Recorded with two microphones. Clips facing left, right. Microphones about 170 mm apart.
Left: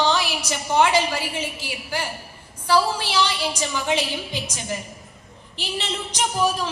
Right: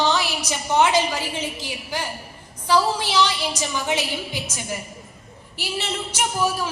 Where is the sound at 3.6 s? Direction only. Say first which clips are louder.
Left 2 dB; 10° right (ahead or behind).